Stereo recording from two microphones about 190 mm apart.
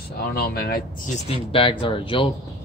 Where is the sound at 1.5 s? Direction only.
25° left (ahead or behind).